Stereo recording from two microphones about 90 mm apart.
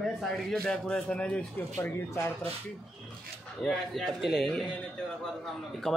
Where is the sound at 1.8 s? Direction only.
30° left (ahead or behind).